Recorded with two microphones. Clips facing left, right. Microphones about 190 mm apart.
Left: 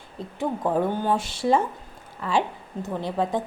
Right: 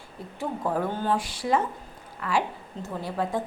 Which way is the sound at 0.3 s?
20° left (ahead or behind).